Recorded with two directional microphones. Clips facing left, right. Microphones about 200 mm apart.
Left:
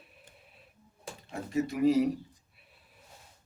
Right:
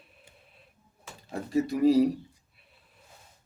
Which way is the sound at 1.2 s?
35° right (ahead or behind).